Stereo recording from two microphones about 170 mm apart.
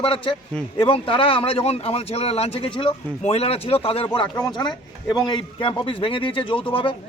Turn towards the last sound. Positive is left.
turn(degrees=30)  # may be behind; listen again after turning